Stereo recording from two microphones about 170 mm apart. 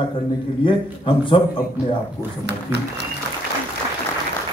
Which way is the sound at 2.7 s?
15° right (ahead or behind).